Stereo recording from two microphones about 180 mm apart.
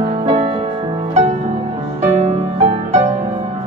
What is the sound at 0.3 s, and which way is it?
Music, 30° right (ahead or behind).